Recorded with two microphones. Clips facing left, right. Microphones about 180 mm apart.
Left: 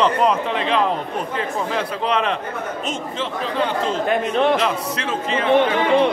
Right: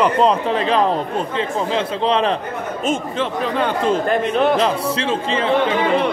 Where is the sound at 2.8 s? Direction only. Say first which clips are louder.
Right 5 dB; 55° right (ahead or behind).